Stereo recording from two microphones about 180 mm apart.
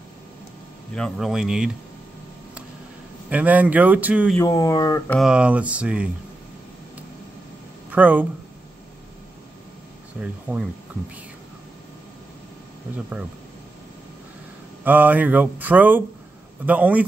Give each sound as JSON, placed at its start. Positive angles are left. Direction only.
{"t": 0.9, "sound": "speech", "side_deg": 0}
{"t": 3.3, "sound": "a man's voice", "side_deg": -10}
{"t": 4.4, "sound": "speech", "side_deg": 20}
{"t": 5.1, "sound": "a man's voice", "side_deg": -5}
{"t": 7.9, "sound": "speech", "side_deg": -10}
{"t": 10.2, "sound": "speech", "side_deg": -5}
{"t": 14.9, "sound": "a man's voice", "side_deg": -10}